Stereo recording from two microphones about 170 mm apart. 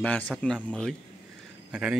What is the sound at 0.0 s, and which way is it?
Speech, 10° left (ahead or behind).